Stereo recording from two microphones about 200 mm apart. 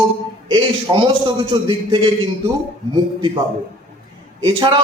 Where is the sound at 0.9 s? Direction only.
20° right (ahead or behind).